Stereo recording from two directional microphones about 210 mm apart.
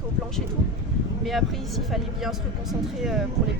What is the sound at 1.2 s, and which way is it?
Speech, centre (ahead or behind).